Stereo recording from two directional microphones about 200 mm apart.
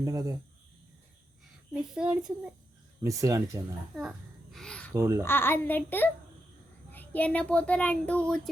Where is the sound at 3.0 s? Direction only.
15° right (ahead or behind).